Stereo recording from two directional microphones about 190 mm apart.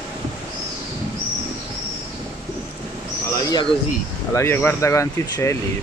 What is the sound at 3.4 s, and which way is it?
Bird, 20° left (ahead or behind).